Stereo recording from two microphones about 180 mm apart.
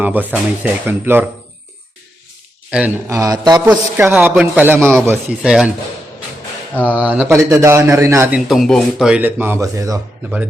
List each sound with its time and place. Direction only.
0.0 s speech: 10° right (ahead or behind)
2.6 s speech: 5° right (ahead or behind)
3.1 s a man's voice: 20° right (ahead or behind)
3.7 s speech: 10° right (ahead or behind)
6.8 s speech: 10° right (ahead or behind)
8.4 s speech: centre (ahead or behind); by 10.0 s 20° right (ahead or behind)
10.2 s speech: 5° right (ahead or behind)